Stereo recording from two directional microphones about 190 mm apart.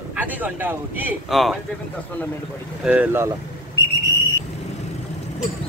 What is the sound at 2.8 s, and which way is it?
Speech, 5° right (ahead or behind).